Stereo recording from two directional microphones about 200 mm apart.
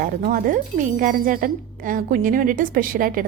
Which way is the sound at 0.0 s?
45° right (ahead or behind).